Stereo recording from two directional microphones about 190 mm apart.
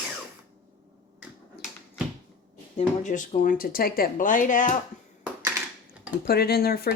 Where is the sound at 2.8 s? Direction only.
40° left (ahead or behind).